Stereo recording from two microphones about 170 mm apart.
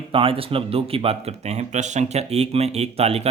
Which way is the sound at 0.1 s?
30° right (ahead or behind).